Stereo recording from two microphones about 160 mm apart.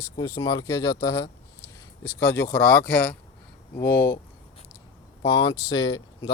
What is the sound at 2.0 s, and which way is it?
Speech, 80° left.